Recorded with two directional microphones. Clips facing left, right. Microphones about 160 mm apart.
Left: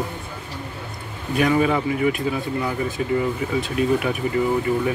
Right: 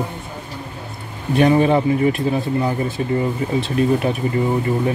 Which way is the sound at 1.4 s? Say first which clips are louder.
Right 5 dB; 30° right (ahead or behind).